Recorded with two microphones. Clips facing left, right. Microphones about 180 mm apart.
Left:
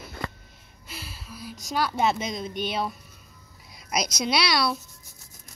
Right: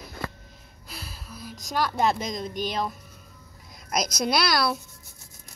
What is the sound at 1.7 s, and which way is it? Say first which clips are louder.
Speech: even; 5° left (ahead or behind).